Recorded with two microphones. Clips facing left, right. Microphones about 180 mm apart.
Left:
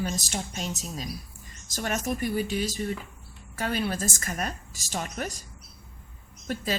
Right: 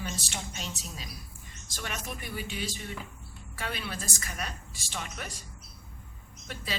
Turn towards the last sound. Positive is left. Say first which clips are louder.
# left 8 dB
turn(degrees=45)  # may be behind; listen again after turning